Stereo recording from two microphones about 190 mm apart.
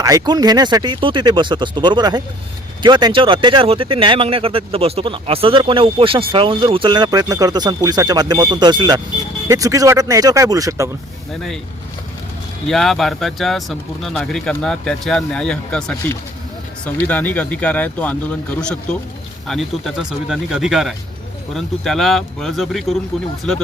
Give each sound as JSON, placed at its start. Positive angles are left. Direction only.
{"t": 0.0, "sound": "speech", "side_deg": -20}
{"t": 12.6, "sound": "speech", "side_deg": 0}